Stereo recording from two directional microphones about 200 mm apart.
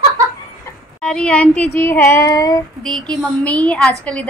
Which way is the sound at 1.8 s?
10° left (ahead or behind).